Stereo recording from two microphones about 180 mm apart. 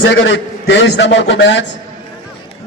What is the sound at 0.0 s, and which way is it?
A man's voice, 90° left.